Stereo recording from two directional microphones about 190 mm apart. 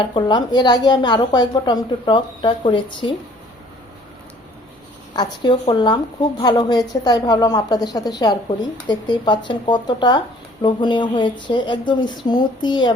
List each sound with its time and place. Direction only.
0.0 s speech: 25° left (ahead or behind)
5.1 s speech: 25° left (ahead or behind)